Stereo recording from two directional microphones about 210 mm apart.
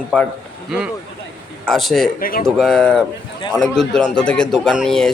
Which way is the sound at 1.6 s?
Centre (ahead or behind).